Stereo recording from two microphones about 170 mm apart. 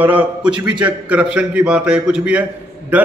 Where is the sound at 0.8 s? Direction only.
5° right (ahead or behind).